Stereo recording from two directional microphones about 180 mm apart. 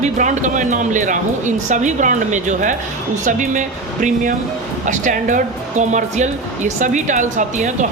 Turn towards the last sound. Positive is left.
turn(degrees=-45)  # may be behind; listen again after turning